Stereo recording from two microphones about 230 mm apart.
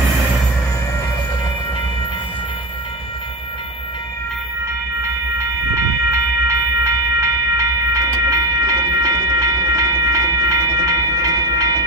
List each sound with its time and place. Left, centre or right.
5.0 s train: centre